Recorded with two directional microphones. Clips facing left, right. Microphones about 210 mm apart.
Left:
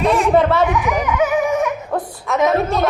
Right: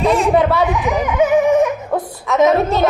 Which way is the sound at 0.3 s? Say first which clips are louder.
Even; centre (ahead or behind).